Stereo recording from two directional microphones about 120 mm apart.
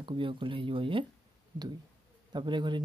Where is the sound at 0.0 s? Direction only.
45° right (ahead or behind).